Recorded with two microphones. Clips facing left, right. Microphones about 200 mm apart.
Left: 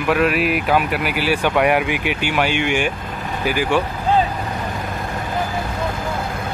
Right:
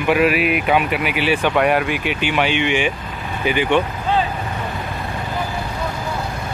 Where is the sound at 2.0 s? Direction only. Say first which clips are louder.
Even; 55° left (ahead or behind).